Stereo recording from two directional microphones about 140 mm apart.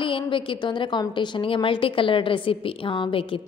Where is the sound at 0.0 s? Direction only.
35° left (ahead or behind).